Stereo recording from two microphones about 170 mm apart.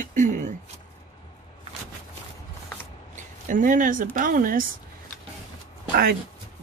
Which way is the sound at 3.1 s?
50° right (ahead or behind).